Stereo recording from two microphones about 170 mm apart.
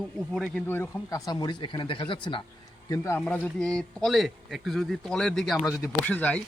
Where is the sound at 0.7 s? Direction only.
15° left (ahead or behind).